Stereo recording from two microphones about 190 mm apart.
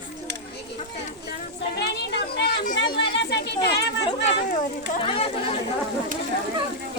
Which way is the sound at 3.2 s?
60° left (ahead or behind).